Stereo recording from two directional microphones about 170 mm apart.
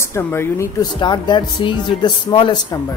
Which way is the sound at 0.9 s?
25° left (ahead or behind).